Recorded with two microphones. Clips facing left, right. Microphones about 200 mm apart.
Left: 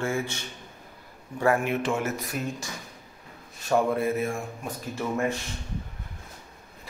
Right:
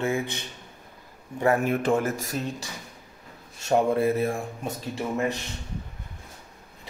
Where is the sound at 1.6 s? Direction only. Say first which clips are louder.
Right 3 dB; 45° right (ahead or behind).